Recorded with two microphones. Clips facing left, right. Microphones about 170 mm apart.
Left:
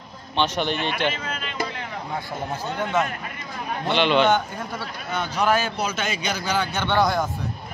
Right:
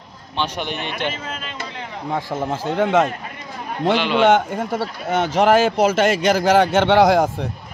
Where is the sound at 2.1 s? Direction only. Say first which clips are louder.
Right 7 dB; 90° right.